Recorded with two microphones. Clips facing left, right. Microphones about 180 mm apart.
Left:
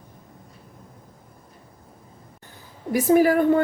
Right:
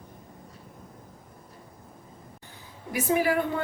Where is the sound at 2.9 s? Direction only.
45° left (ahead or behind).